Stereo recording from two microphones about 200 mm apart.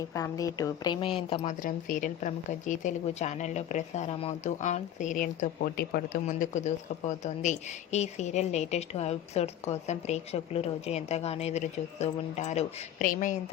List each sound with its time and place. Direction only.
0.1 s a woman's voice: 15° left (ahead or behind)
1.5 s a woman's voice: 40° left (ahead or behind)